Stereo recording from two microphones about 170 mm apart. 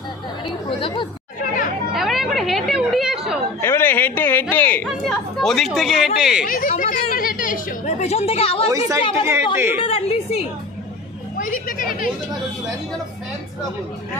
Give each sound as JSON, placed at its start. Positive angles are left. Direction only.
{"t": 0.7, "sound": "a woman's voice", "side_deg": 30}
{"t": 2.0, "sound": "music", "side_deg": 0}
{"t": 3.6, "sound": "a sound", "side_deg": 15}
{"t": 4.8, "sound": "speech", "side_deg": 0}
{"t": 6.4, "sound": "a woman's voice", "side_deg": 55}
{"t": 8.6, "sound": "a woman's voice", "side_deg": -20}
{"t": 9.8, "sound": "a woman's voice", "side_deg": 35}
{"t": 11.3, "sound": "speech", "side_deg": 55}